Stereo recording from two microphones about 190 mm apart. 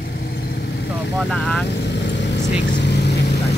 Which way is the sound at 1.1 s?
5° left (ahead or behind).